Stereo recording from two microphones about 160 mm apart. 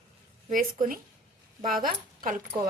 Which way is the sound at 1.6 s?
60° right (ahead or behind).